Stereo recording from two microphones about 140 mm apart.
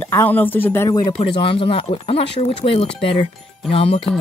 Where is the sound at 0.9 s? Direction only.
30° left (ahead or behind).